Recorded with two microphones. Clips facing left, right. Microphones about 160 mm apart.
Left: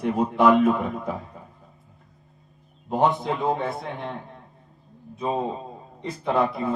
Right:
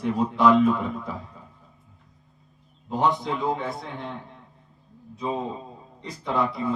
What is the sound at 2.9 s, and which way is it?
Speech, 55° left (ahead or behind).